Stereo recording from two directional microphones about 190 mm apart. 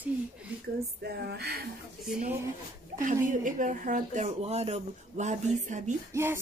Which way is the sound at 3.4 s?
45° right (ahead or behind).